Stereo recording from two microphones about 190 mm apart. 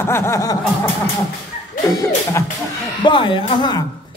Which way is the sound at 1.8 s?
15° left (ahead or behind).